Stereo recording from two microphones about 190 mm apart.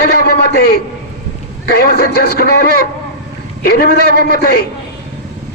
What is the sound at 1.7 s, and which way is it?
Speech, 60° left (ahead or behind).